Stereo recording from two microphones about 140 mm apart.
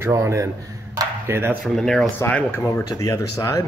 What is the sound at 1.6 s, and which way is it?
Speech, 5° left (ahead or behind).